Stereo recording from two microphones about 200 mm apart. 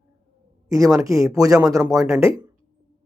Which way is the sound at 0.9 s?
15° right (ahead or behind).